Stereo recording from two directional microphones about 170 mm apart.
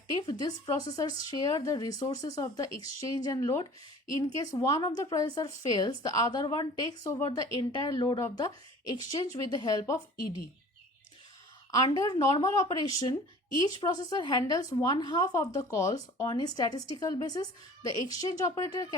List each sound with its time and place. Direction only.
0.1 s a woman's voice: 25° left (ahead or behind)
11.7 s a woman's voice: 25° left (ahead or behind)